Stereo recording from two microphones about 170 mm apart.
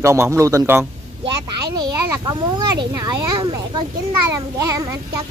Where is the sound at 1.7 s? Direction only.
25° right (ahead or behind).